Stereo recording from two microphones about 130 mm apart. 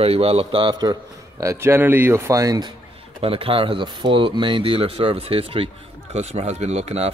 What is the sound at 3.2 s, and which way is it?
Speech, 45° right (ahead or behind).